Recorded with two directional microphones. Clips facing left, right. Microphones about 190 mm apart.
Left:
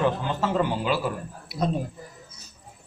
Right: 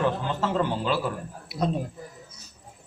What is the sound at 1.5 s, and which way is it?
Speech, centre (ahead or behind).